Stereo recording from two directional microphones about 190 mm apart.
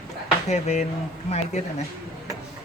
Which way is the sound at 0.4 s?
35° left (ahead or behind).